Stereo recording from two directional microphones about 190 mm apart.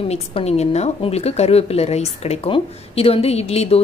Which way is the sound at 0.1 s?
35° left (ahead or behind).